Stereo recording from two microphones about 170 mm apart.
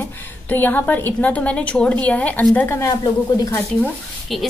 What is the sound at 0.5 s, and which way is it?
A woman's voice, 10° left (ahead or behind).